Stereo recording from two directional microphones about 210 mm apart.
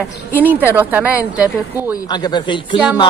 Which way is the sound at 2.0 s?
20° left (ahead or behind).